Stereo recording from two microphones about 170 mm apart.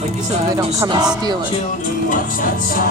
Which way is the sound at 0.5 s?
20° right (ahead or behind).